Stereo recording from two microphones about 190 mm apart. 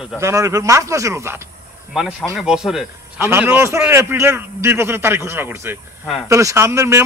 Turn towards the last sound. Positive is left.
turn(degrees=-15)  # may be behind; listen again after turning